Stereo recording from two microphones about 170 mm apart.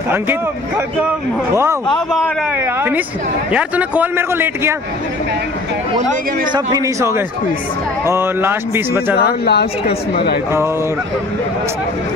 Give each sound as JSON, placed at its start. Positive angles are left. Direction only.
{"t": 0.1, "sound": "a man's voice", "side_deg": -10}
{"t": 6.5, "sound": "speech", "side_deg": -20}
{"t": 8.1, "sound": "a man's voice", "side_deg": -15}
{"t": 9.5, "sound": "a woman's voice", "side_deg": 70}